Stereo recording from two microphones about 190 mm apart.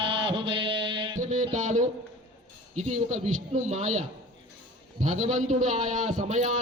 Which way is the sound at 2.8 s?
40° right (ahead or behind).